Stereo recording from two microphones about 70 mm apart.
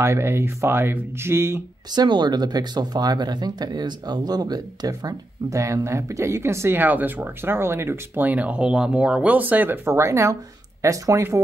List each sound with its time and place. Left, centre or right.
0.0 s speech: right
1.9 s speech: right
6.8 s speech: right
8.3 s speech: right
9.8 s speech: right